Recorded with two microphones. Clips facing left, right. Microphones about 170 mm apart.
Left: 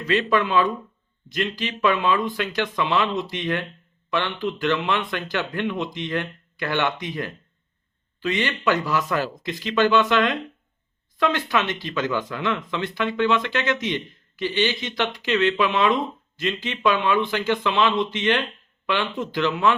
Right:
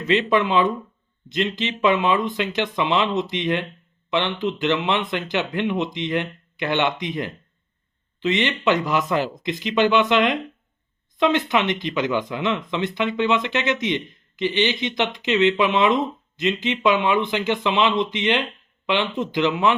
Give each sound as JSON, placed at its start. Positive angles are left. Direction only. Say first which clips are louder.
{"t": 0.1, "sound": "speech", "louder": "right 2 dB", "side_deg": -20}